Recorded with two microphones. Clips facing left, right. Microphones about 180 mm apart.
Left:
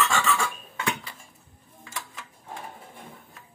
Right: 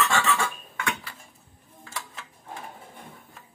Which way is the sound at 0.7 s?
25° left (ahead or behind).